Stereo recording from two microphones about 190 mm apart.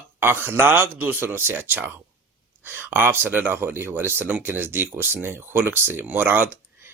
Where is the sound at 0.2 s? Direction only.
10° right (ahead or behind).